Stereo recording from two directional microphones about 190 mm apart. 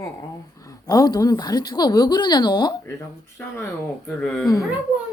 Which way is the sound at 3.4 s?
10° left (ahead or behind).